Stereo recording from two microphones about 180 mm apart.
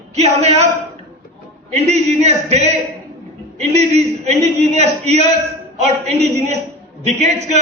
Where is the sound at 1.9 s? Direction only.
35° right (ahead or behind).